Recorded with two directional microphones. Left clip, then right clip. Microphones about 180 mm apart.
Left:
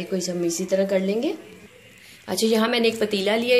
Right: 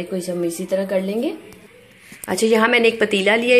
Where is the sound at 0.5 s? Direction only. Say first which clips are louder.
Left 2 dB; 5° right (ahead or behind).